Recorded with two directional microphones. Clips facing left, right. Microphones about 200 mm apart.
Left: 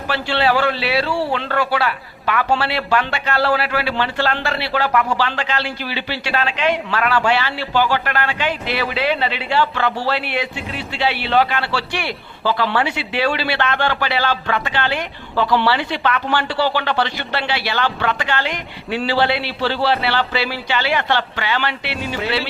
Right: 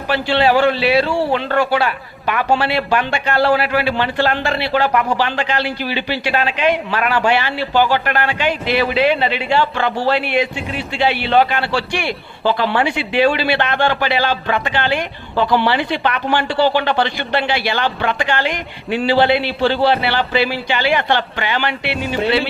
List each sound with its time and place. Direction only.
0.1 s a man's voice: 20° right (ahead or behind)